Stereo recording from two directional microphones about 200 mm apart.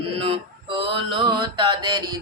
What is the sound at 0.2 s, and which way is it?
Mantra, 25° right (ahead or behind).